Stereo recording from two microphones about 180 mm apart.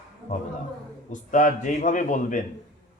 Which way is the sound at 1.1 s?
45° left (ahead or behind).